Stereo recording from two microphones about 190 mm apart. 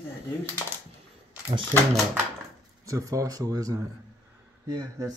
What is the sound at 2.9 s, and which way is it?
Speech, 15° right (ahead or behind).